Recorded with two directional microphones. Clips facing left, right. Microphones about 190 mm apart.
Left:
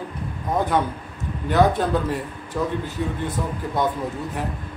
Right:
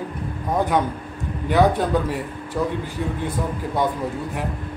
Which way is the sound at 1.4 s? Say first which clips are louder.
Right 1 dB; 15° right (ahead or behind).